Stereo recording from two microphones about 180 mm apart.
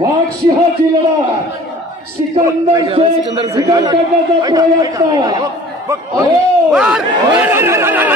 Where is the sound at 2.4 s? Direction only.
20° right (ahead or behind).